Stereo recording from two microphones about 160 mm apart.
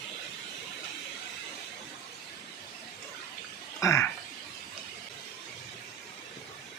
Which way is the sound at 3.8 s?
15° left (ahead or behind).